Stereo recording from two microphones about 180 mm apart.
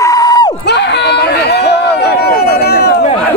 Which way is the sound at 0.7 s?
70° left (ahead or behind).